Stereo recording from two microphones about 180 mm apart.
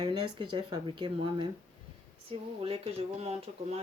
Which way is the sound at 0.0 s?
25° right (ahead or behind).